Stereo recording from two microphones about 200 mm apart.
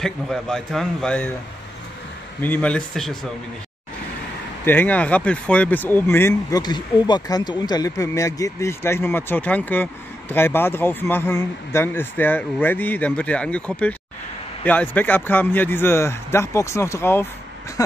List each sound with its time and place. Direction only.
0.0 s a man's voice: centre (ahead or behind)
2.4 s a man's voice: 10° left (ahead or behind)
4.6 s speech: 10° left (ahead or behind)